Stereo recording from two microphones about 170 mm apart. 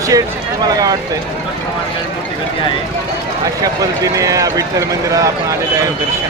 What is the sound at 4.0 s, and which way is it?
Speech, 20° right (ahead or behind).